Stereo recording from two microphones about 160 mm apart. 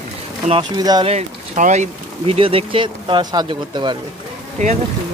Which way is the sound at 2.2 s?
35° right (ahead or behind).